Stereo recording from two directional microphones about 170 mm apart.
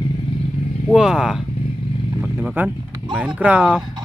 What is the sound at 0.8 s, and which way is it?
Speech, 5° right (ahead or behind).